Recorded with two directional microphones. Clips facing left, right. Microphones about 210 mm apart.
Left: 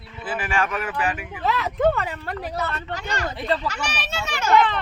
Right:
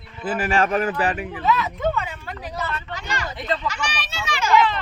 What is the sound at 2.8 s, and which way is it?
Speech, 40° left (ahead or behind).